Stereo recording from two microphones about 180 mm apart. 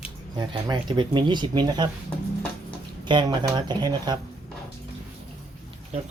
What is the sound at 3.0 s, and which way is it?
Speech, 25° right (ahead or behind).